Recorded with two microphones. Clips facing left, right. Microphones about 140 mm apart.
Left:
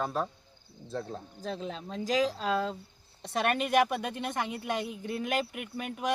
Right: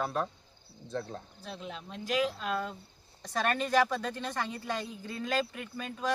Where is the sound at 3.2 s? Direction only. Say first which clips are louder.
Left 2 dB; 25° left (ahead or behind).